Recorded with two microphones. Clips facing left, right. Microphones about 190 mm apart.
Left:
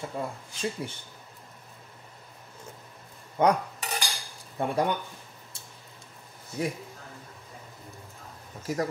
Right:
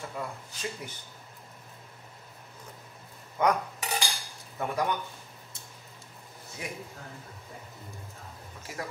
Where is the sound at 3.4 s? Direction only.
30° left (ahead or behind).